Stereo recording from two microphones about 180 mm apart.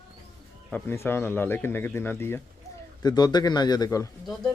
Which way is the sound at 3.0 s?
25° left (ahead or behind).